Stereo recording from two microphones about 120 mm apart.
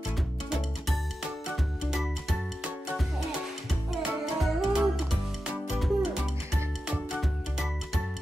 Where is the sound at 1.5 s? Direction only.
Centre (ahead or behind).